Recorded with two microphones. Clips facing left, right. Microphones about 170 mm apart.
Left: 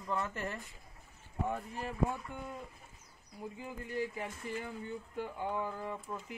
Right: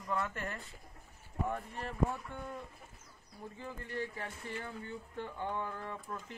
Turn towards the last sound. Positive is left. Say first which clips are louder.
# left 2 dB
turn(degrees=10)  # may be behind; listen again after turning